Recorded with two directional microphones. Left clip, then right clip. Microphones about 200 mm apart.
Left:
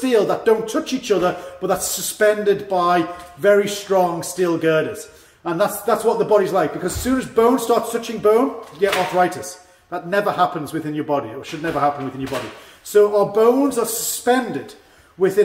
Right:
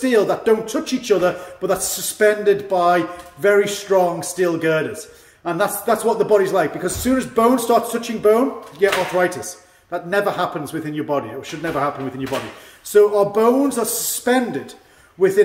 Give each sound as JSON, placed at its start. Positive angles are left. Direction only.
{"t": 0.0, "sound": "a man's voice", "side_deg": -10}
{"t": 12.9, "sound": "a man's voice", "side_deg": -15}